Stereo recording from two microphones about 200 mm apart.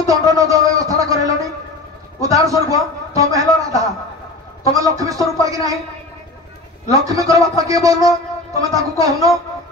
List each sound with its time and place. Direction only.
0.0 s a sound: 15° right (ahead or behind)
2.2 s a man's voice: 15° right (ahead or behind)
7.1 s speech: 15° right (ahead or behind)